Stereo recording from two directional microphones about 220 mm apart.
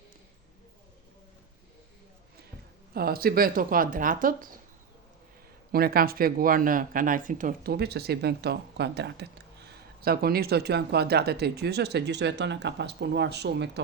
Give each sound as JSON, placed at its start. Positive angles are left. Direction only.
{"t": 2.9, "sound": "speech", "side_deg": -45}
{"t": 5.7, "sound": "speech", "side_deg": -45}